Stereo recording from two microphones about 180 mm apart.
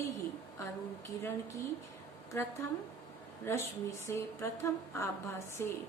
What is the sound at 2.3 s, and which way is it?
A woman's voice, 15° left (ahead or behind).